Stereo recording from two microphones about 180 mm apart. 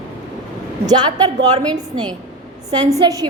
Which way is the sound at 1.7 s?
25° right (ahead or behind).